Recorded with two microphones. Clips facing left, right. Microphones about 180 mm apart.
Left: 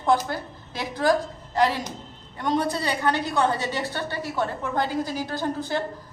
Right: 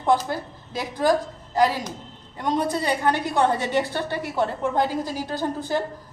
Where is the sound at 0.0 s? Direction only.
15° right (ahead or behind).